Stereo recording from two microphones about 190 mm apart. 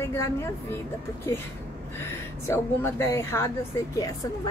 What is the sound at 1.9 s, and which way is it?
A woman's voice, 15° left (ahead or behind).